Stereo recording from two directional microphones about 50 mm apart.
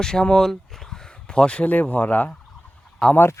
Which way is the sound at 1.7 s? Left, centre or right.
Left.